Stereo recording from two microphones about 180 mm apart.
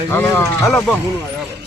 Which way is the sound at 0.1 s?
15° left (ahead or behind).